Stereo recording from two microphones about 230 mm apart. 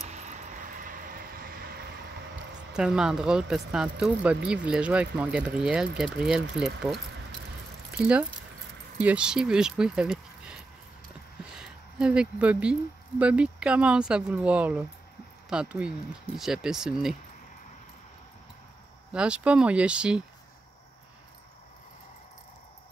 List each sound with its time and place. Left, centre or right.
0.1 s vehicle: right
2.7 s speech: centre
11.5 s a sound: centre
13.2 s speech: centre
19.1 s speech: centre